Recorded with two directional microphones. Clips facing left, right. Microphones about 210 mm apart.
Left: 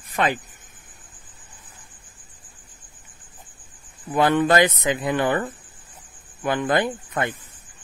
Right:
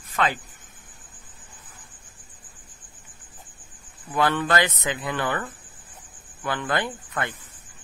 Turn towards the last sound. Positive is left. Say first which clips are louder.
# left 5 dB
turn(degrees=20)  # may be behind; listen again after turning